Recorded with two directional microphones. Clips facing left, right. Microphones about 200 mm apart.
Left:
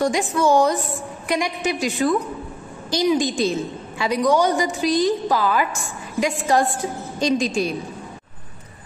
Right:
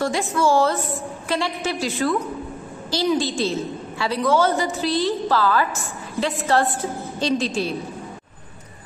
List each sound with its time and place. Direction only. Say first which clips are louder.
0.0 s a woman's voice: left 2 dB; 15° left (ahead or behind)